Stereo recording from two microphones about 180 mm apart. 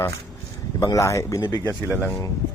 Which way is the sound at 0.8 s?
15° left (ahead or behind).